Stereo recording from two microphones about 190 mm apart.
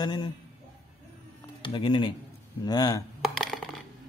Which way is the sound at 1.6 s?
25° left (ahead or behind).